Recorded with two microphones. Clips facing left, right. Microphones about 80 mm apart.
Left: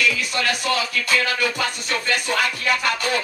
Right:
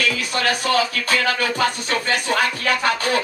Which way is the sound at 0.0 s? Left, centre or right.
Right.